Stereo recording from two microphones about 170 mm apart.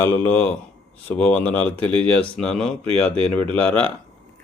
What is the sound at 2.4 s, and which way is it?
Speech, 5° left (ahead or behind).